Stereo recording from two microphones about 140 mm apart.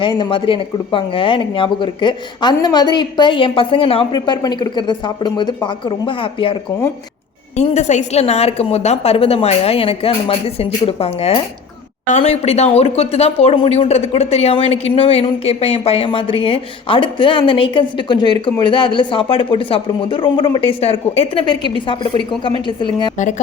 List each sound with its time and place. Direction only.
0.0 s speech: 40° left (ahead or behind)
7.5 s a woman's voice: 55° left (ahead or behind); by 23.1 s 35° left (ahead or behind)